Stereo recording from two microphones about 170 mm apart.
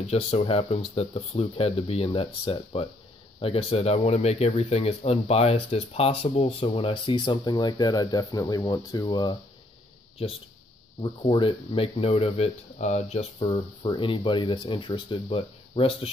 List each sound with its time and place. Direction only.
0.0 s speech: 40° left (ahead or behind)
11.0 s speech: 30° left (ahead or behind)